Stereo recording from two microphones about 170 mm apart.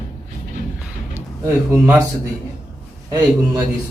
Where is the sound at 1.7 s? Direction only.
10° right (ahead or behind).